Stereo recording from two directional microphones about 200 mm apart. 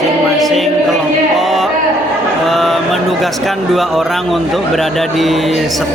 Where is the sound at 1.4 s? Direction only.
Centre (ahead or behind).